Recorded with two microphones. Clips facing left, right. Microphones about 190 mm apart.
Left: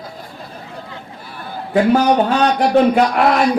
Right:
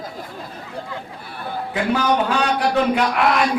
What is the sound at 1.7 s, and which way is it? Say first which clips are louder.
A man's voice: left 7 dB; 45° left (ahead or behind).